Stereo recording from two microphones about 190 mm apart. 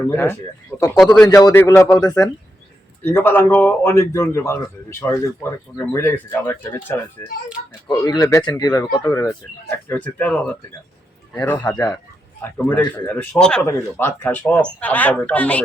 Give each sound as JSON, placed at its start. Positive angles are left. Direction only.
{"t": 0.1, "sound": "a man's voice", "side_deg": 10}
{"t": 1.3, "sound": "speech", "side_deg": 15}
{"t": 7.9, "sound": "speech", "side_deg": 20}